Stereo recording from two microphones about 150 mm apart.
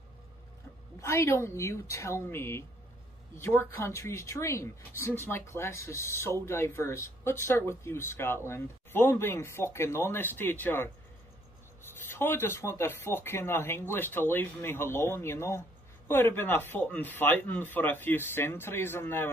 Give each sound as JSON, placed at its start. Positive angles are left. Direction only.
{"t": 1.0, "sound": "speech", "side_deg": 20}
{"t": 12.1, "sound": "speech", "side_deg": 15}